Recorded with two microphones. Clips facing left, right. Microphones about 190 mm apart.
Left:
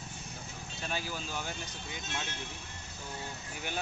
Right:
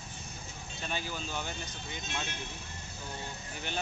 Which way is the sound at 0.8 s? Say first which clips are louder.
Even; 5° left (ahead or behind).